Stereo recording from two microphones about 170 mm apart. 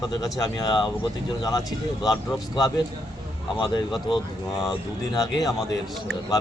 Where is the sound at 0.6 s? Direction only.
25° left (ahead or behind).